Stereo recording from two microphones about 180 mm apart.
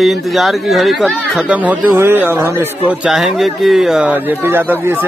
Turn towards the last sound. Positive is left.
turn(degrees=-10)  # may be behind; listen again after turning